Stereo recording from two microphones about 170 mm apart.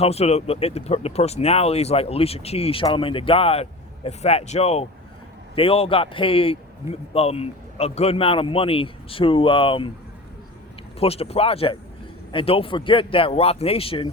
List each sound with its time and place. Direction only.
0.0 s speech: 35° left (ahead or behind)
11.0 s speech: 35° left (ahead or behind)